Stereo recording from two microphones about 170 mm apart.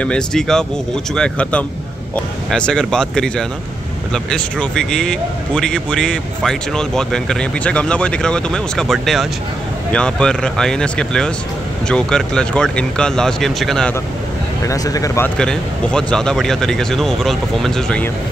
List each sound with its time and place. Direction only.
0.0 s speech: 5° left (ahead or behind)
14.7 s speech: 20° left (ahead or behind)
15.3 s speech: 5° left (ahead or behind)